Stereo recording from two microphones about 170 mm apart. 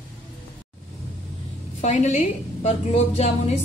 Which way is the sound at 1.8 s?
40° left (ahead or behind).